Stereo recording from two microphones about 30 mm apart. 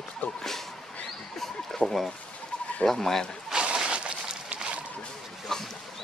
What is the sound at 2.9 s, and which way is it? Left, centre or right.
Speech, centre.